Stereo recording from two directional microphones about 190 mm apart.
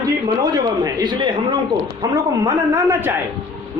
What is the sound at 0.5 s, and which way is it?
A man's voice, 20° right (ahead or behind).